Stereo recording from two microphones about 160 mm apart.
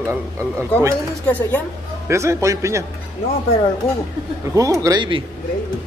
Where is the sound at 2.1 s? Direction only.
15° right (ahead or behind).